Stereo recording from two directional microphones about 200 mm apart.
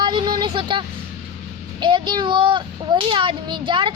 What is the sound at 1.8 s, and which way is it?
A child's voice, 20° right (ahead or behind).